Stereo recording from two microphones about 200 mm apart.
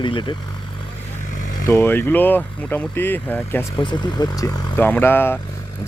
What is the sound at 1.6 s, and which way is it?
Speech, 10° left (ahead or behind).